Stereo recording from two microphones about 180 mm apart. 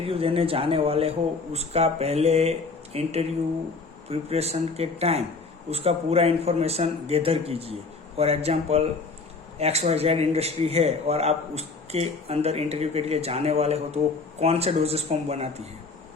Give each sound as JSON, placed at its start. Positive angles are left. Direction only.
{"t": 0.0, "sound": "a man's voice", "side_deg": -30}